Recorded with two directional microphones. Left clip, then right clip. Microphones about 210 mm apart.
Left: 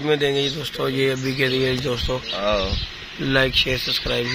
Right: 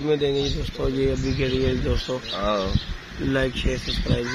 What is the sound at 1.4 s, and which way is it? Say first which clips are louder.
Speech: left 5 dB; 15° left (ahead or behind).